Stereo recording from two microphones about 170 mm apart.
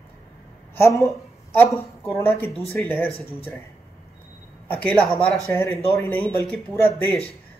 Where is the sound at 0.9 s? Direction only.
15° left (ahead or behind).